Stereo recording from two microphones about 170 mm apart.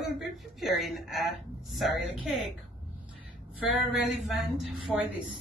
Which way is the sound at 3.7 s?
Centre (ahead or behind).